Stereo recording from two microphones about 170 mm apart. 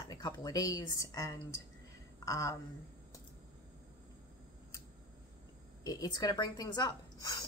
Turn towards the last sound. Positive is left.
turn(degrees=25)  # may be behind; listen again after turning